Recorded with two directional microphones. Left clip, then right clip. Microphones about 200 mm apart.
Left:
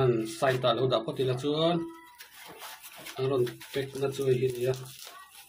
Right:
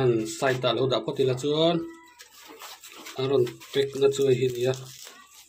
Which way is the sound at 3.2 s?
25° right (ahead or behind).